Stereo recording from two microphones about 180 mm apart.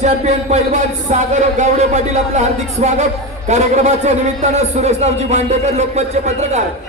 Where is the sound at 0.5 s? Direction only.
40° right (ahead or behind).